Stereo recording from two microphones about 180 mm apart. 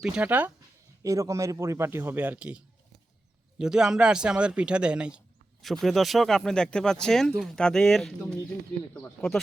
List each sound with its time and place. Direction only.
0.0 s a man's voice: 10° right (ahead or behind)